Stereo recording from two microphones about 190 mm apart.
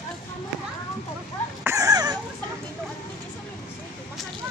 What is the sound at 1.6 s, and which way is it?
Cough, 15° right (ahead or behind).